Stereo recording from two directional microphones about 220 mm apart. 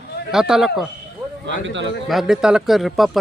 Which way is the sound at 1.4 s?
55° right (ahead or behind).